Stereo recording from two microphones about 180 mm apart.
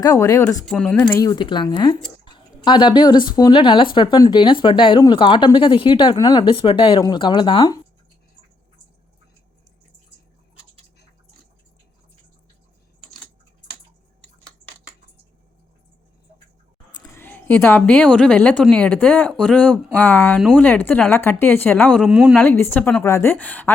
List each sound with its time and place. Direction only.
0.0 s a woman's voice: 15° left (ahead or behind)
0.6 s speech: centre (ahead or behind)
1.3 s speech: 25° left (ahead or behind)
16.9 s a woman's voice: 20° left (ahead or behind)
21.9 s speech: 5° right (ahead or behind)
22.4 s a woman's voice: 15° left (ahead or behind)